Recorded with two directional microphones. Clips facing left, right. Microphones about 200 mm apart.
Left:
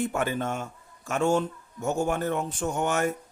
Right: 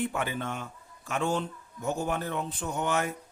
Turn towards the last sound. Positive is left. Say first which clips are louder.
# left 4 dB
turn(degrees=45)  # may be behind; listen again after turning